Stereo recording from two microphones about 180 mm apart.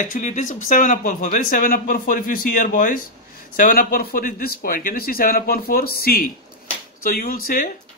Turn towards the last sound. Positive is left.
turn(degrees=50)  # may be behind; listen again after turning